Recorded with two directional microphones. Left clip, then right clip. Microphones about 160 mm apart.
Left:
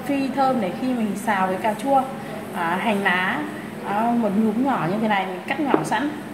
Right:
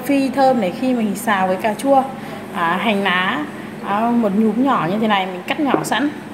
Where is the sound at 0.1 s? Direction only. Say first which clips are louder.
Right 6 dB; 45° right (ahead or behind).